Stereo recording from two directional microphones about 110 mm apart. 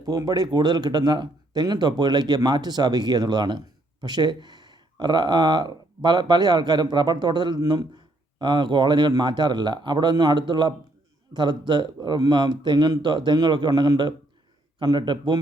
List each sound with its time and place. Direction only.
0.0 s speech: 35° right (ahead or behind)